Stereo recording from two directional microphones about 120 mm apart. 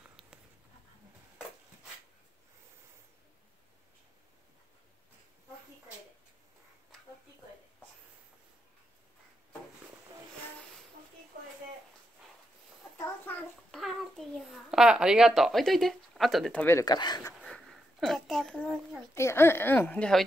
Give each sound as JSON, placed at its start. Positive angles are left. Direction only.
{"t": 13.0, "sound": "a sound", "side_deg": 15}
{"t": 13.7, "sound": "babbling", "side_deg": 0}
{"t": 16.8, "sound": "speech", "side_deg": 35}
{"t": 17.4, "sound": "sniff", "side_deg": 0}
{"t": 19.1, "sound": "a woman's voice", "side_deg": 20}